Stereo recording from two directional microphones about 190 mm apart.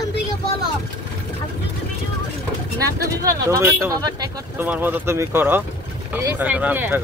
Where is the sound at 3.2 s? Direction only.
15° right (ahead or behind).